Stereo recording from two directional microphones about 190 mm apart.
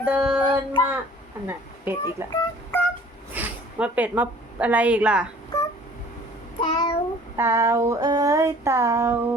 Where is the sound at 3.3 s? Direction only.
5° right (ahead or behind).